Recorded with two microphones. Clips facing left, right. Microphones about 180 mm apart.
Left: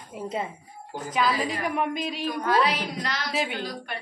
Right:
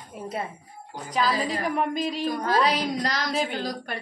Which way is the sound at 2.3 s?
40° right (ahead or behind).